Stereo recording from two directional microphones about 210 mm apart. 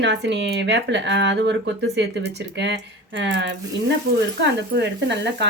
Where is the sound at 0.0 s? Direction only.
55° right (ahead or behind).